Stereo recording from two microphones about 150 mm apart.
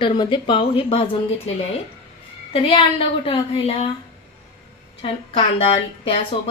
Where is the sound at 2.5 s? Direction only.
40° left (ahead or behind).